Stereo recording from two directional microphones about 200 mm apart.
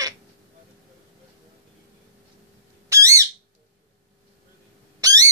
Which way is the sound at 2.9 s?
15° right (ahead or behind).